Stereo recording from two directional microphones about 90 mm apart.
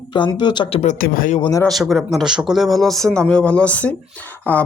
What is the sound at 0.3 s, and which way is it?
Speech, 60° left (ahead or behind).